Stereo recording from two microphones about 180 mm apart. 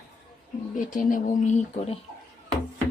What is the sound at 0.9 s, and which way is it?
Speech, 45° left (ahead or behind).